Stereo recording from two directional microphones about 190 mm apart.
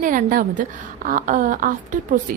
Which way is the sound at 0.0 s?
45° right (ahead or behind).